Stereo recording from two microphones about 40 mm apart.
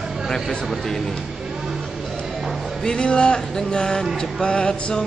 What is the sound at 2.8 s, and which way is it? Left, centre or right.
Music, left.